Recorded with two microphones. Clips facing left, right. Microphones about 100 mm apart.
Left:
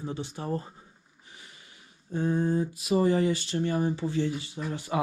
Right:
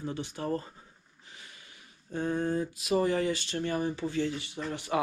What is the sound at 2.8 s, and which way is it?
Speech, 20° left (ahead or behind).